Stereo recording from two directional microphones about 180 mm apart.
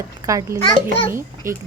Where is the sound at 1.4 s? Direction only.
15° right (ahead or behind).